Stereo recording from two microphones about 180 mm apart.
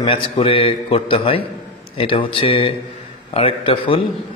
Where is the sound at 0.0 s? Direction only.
30° left (ahead or behind).